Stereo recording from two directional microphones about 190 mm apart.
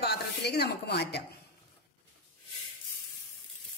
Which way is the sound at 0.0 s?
60° left (ahead or behind).